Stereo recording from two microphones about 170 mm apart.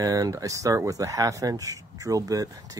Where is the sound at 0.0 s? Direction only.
20° right (ahead or behind).